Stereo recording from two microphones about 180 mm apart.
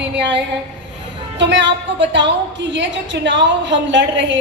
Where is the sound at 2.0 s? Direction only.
80° right.